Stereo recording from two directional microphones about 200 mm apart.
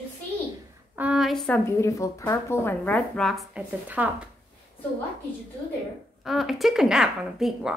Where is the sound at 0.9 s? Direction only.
5° right (ahead or behind).